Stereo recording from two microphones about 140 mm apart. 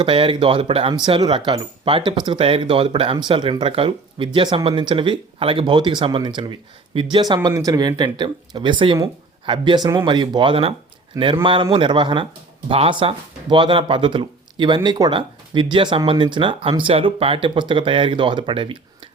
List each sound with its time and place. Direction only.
0.0 s speech: 40° right (ahead or behind)